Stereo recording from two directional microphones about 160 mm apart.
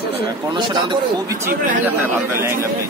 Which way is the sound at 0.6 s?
30° right (ahead or behind).